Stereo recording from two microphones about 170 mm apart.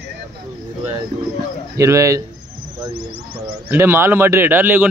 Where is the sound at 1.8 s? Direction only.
20° right (ahead or behind).